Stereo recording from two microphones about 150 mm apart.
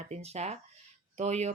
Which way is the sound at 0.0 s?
45° right (ahead or behind).